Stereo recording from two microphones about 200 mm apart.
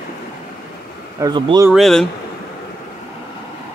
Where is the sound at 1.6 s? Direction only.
Centre (ahead or behind).